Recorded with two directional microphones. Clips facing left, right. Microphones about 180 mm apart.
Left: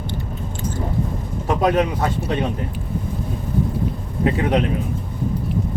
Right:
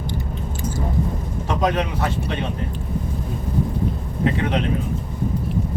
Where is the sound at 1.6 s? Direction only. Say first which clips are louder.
Left 3 dB; 40° left (ahead or behind).